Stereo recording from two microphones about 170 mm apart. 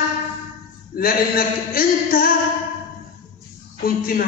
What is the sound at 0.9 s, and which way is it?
A man's voice, 60° left (ahead or behind).